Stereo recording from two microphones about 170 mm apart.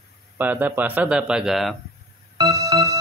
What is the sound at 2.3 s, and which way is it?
Music, 20° right (ahead or behind).